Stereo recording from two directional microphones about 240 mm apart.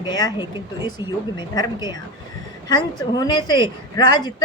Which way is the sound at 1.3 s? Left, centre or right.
Centre.